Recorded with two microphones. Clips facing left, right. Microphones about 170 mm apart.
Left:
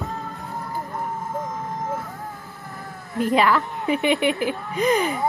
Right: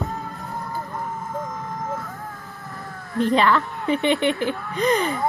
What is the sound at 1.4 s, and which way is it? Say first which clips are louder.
Vehicle: left 1 dB; 25° left (ahead or behind).